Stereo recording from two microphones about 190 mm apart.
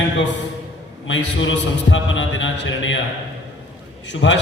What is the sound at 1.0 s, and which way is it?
A man's voice, 80° left.